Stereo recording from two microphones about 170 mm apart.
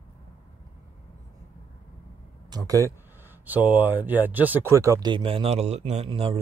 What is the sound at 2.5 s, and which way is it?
Speech, 20° right (ahead or behind).